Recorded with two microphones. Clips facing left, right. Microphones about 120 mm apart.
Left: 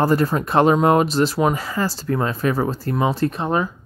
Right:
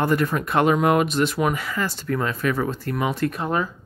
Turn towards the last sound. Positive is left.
turn(degrees=25)  # may be behind; listen again after turning